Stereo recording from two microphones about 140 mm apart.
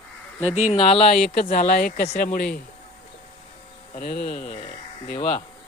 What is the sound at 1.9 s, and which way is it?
Speech, 90° left.